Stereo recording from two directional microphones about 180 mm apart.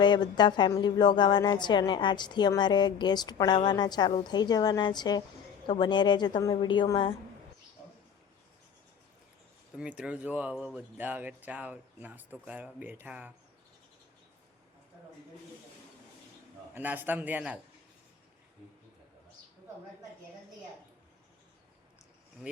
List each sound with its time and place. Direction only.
0.0 s speech: 25° left (ahead or behind)
9.7 s speech: 5° right (ahead or behind)
16.7 s speech: 10° right (ahead or behind)